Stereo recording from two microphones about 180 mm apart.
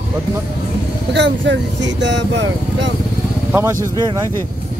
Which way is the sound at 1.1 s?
75° right (ahead or behind).